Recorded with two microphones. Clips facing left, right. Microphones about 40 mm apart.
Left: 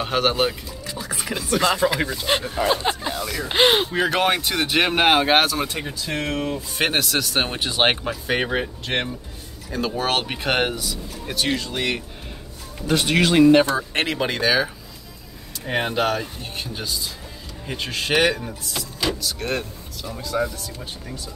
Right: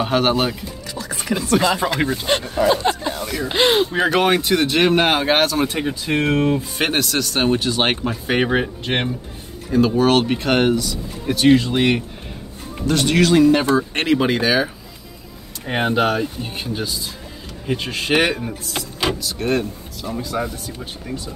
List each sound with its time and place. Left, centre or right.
0.0 s speech: centre
3.4 s speech: centre
4.1 s speech: centre
5.7 s speech: centre
6.8 s speech: centre
8.3 s speech: centre
9.7 s speech: centre
11.5 s speech: right
12.8 s speech: centre
13.3 s speech: left
13.7 s speech: centre
15.6 s speech: centre
18.1 s speech: right
19.2 s speech: centre